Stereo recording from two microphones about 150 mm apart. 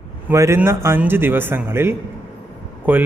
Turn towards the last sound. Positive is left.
turn(degrees=-10)  # may be behind; listen again after turning